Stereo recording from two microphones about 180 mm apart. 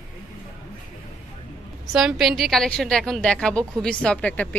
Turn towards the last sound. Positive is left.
turn(degrees=5)  # may be behind; listen again after turning